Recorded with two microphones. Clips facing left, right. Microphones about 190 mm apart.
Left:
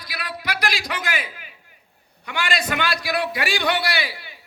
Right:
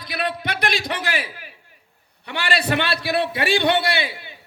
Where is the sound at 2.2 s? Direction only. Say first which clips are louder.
Right 2 dB; 30° right (ahead or behind).